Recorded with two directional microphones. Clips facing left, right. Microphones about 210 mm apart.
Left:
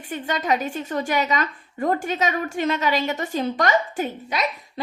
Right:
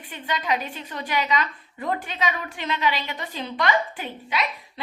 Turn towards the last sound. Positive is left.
turn(degrees=45)  # may be behind; listen again after turning